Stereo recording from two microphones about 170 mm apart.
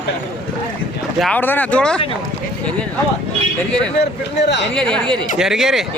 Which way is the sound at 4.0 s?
85° left.